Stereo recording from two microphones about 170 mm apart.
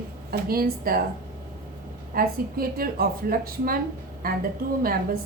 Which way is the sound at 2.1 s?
60° right (ahead or behind).